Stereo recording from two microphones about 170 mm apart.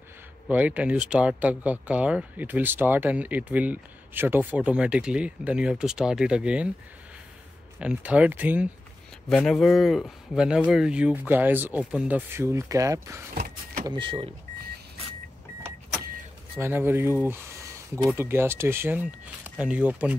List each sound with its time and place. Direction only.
0.5 s speech: 10° right (ahead or behind)
7.8 s speech: 5° right (ahead or behind)
9.3 s speech: centre (ahead or behind); by 13.2 s 20° right (ahead or behind)
13.3 s vehicle: 55° right (ahead or behind)
13.8 s speech: 30° right (ahead or behind)
16.5 s speech: 15° right (ahead or behind)